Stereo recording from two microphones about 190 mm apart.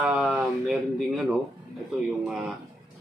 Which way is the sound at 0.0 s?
5° right (ahead or behind).